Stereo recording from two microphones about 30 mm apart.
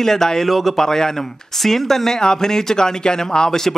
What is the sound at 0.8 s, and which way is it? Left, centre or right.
Speech, centre.